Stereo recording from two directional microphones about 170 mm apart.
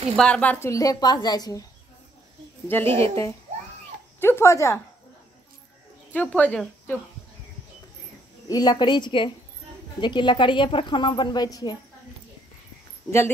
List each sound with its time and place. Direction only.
0.1 s a woman's voice: 5° left (ahead or behind); by 1.6 s 25° left (ahead or behind)
2.7 s speech: 10° left (ahead or behind)
4.2 s speech: 15° left (ahead or behind)
6.1 s speech: 10° left (ahead or behind)
8.5 s a woman's voice: 25° left (ahead or behind)
13.0 s a woman's voice: 25° left (ahead or behind)